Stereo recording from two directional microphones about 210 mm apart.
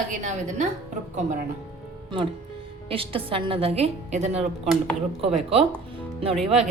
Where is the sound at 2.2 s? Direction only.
25° right (ahead or behind).